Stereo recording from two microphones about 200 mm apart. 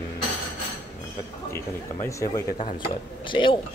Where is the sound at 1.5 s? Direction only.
15° left (ahead or behind).